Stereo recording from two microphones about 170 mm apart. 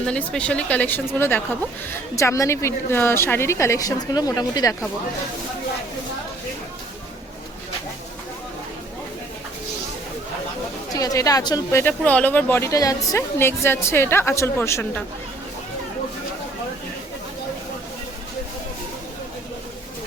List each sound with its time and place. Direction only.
0.0 s speech: 5° left (ahead or behind)
10.9 s speech: 20° left (ahead or behind)